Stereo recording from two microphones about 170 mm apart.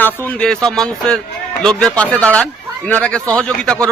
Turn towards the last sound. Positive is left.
turn(degrees=5)  # may be behind; listen again after turning